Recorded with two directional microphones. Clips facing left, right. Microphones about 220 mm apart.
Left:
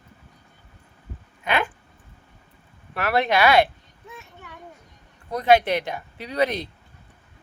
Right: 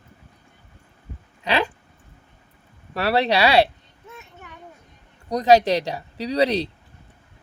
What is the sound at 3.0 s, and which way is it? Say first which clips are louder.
Speech: right 1 dB; 30° right (ahead or behind).